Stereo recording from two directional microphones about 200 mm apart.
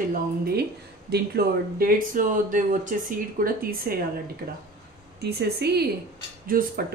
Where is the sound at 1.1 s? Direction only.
50° right (ahead or behind).